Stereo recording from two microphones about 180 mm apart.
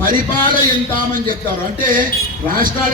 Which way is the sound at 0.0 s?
50° right (ahead or behind).